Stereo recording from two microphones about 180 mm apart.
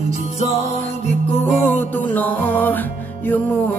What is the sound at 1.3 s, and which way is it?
Music, 10° left (ahead or behind).